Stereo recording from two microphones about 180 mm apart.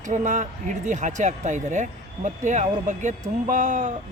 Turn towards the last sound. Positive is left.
turn(degrees=-45)  # may be behind; listen again after turning